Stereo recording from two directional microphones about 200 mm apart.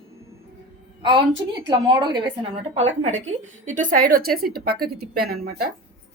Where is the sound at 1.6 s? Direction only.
25° right (ahead or behind); by 5.5 s 50° right (ahead or behind).